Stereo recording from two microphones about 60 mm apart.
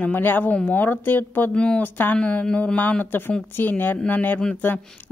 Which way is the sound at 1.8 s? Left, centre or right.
Left.